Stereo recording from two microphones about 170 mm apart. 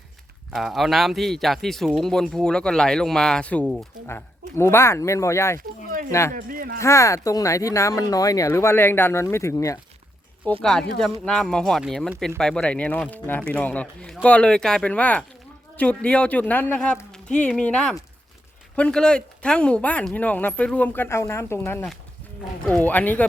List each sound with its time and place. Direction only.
0.5 s a man's voice: centre (ahead or behind)
4.0 s speech: 15° left (ahead or behind)
6.3 s speech: 55° right (ahead or behind)
6.7 s speech: 15° left (ahead or behind)
10.6 s a man's voice: 5° left (ahead or behind)